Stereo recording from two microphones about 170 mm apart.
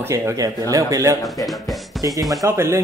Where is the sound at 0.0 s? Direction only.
15° right (ahead or behind).